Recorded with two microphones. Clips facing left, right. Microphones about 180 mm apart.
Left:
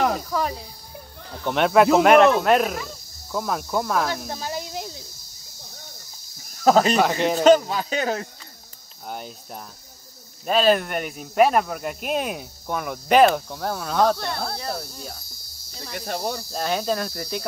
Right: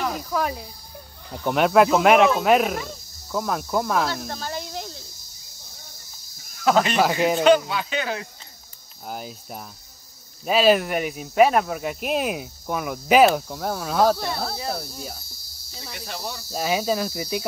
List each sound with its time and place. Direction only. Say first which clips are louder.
0.3 s speech: even; 10° right (ahead or behind)
4.2 s snake: left 1 dB; 5° left (ahead or behind)
6.5 s speech: left 3 dB; 40° left (ahead or behind)
7.0 s speech: even; 5° right (ahead or behind)
7.4 s speech: left 4 dB; 40° left (ahead or behind)
9.0 s speech: even; 5° right (ahead or behind)
15.9 s speech: left 6 dB; 50° left (ahead or behind)
16.4 s speech: right 4 dB; 5° right (ahead or behind)